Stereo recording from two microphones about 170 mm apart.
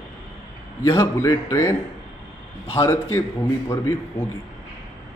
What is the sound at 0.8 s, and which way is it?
Speech, 15° left (ahead or behind).